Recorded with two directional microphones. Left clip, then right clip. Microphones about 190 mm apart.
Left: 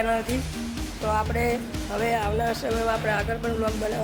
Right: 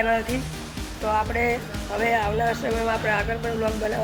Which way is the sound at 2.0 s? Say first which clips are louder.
Right 3 dB; 15° left (ahead or behind).